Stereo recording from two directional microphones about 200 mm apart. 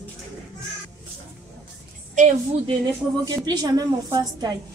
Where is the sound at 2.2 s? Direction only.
40° right (ahead or behind).